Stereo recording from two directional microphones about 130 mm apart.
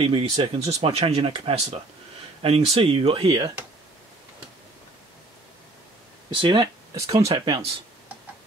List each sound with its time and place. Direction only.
0.0 s speech: 45° right (ahead or behind)
6.3 s speech: 40° right (ahead or behind)